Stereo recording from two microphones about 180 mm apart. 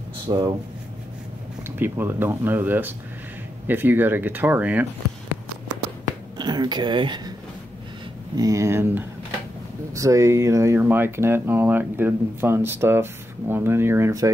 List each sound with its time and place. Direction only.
0.3 s speech: 25° right (ahead or behind)
1.6 s speech: 10° right (ahead or behind)
6.3 s speech: 25° right (ahead or behind)
8.4 s speech: 15° right (ahead or behind)